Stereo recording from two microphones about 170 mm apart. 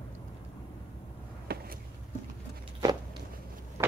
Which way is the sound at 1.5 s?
65° right (ahead or behind).